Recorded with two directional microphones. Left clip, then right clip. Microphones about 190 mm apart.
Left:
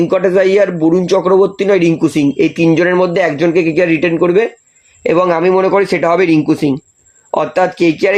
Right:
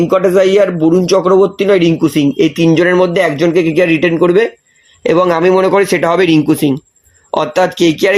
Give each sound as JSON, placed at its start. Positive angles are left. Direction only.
{"t": 0.0, "sound": "speech", "side_deg": -30}